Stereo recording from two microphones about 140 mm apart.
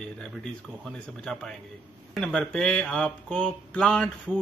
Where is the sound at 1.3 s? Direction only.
10° left (ahead or behind).